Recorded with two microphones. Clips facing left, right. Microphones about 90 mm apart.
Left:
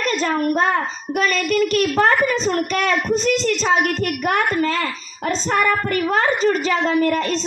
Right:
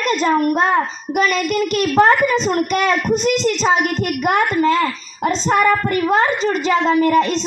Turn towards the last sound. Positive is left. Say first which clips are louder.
# right 4 dB
turn(degrees=-5)  # may be behind; listen again after turning